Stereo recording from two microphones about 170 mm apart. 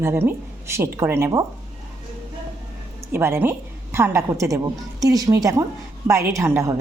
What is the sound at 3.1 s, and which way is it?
A woman's voice, 15° right (ahead or behind).